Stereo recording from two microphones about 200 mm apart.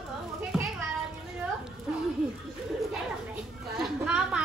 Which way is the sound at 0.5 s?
Centre (ahead or behind).